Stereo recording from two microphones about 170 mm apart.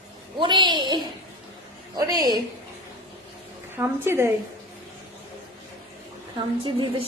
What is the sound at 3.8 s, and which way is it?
Speech, 15° right (ahead or behind).